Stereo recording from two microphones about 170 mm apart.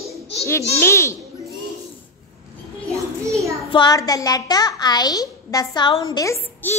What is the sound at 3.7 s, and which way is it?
A child's voice, 25° left (ahead or behind).